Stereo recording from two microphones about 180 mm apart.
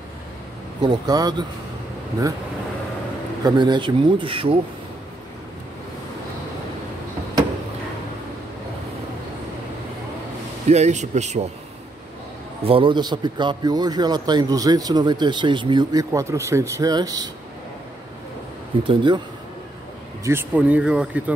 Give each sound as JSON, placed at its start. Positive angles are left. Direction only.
{"t": 0.8, "sound": "a man's voice", "side_deg": -20}
{"t": 3.4, "sound": "a man's voice", "side_deg": -25}
{"t": 10.7, "sound": "speech", "side_deg": -40}
{"t": 12.6, "sound": "a man's voice", "side_deg": -30}
{"t": 18.9, "sound": "a man's voice", "side_deg": -25}
{"t": 20.2, "sound": "speech", "side_deg": -10}